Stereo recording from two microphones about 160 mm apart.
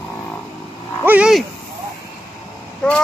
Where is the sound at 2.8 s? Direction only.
5° left (ahead or behind).